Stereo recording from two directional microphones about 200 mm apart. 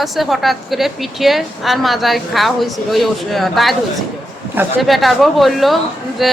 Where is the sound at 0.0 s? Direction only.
Centre (ahead or behind).